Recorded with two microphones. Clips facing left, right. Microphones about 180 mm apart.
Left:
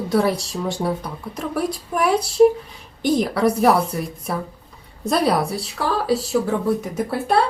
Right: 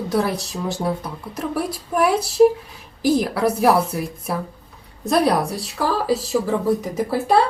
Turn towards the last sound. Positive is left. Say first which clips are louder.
# right 2 dB
turn(degrees=0)  # may be behind; listen again after turning